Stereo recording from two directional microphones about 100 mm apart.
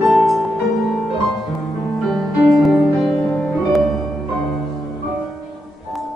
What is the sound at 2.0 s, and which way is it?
Music, centre (ahead or behind).